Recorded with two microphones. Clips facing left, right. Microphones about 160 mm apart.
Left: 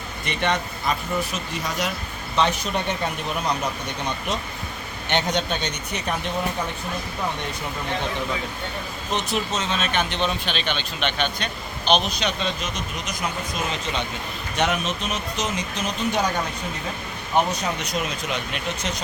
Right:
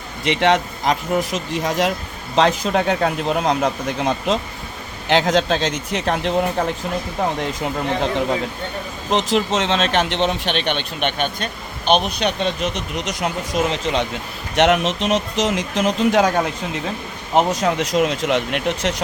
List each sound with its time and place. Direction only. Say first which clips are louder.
0.3 s speech: right 8 dB; 90° right
9.0 s speech: right 8 dB; 90° right
10.2 s speech: right 5 dB; 70° right (ahead or behind); by 16.3 s 90° right
17.3 s speech: right 6 dB; 90° right